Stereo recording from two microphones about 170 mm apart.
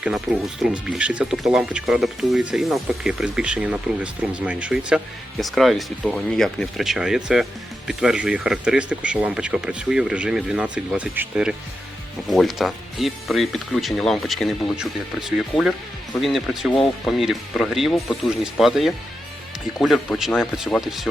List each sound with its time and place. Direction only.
0.3 s speech: 20° right (ahead or behind)
0.6 s speech: 5° right (ahead or behind)